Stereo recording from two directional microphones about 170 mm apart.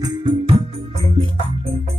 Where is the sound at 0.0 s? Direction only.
25° right (ahead or behind).